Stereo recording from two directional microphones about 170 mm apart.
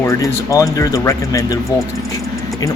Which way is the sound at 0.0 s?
20° left (ahead or behind).